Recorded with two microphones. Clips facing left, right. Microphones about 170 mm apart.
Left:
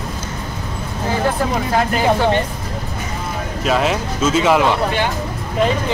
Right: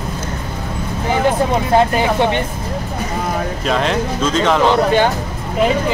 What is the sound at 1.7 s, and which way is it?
Speech, 25° right (ahead or behind).